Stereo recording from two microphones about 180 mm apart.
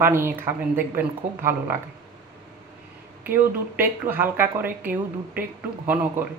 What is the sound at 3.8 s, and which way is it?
A woman's voice, 10° right (ahead or behind).